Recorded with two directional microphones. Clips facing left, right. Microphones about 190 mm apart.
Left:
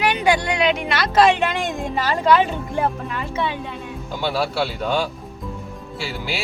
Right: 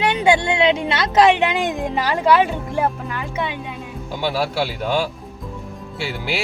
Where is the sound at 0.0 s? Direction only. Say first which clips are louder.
Right 2 dB; 25° right (ahead or behind).